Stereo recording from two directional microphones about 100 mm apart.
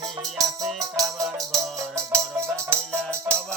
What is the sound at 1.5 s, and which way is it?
Music, 30° right (ahead or behind).